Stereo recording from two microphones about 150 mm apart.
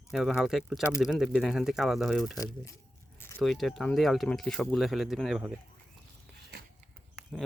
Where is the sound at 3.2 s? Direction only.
15° left (ahead or behind).